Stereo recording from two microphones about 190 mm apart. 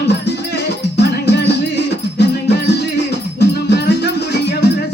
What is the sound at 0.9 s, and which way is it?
Music, 60° left (ahead or behind).